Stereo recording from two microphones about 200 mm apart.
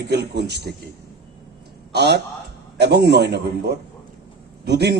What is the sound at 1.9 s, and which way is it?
A man's voice, 55° right (ahead or behind).